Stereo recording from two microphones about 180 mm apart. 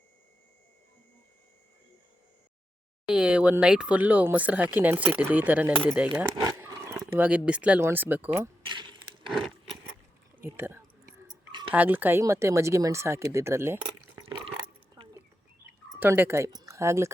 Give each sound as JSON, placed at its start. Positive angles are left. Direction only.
{"t": 3.1, "sound": "speech", "side_deg": -5}
{"t": 6.3, "sound": "roaring cats", "side_deg": -15}
{"t": 7.1, "sound": "speech", "side_deg": -10}
{"t": 8.6, "sound": "keys jangling", "side_deg": -25}
{"t": 9.3, "sound": "a sound", "side_deg": 0}
{"t": 10.4, "sound": "a sound", "side_deg": -15}
{"t": 11.7, "sound": "speech", "side_deg": -10}
{"t": 14.2, "sound": "water", "side_deg": -20}
{"t": 16.0, "sound": "speech", "side_deg": -10}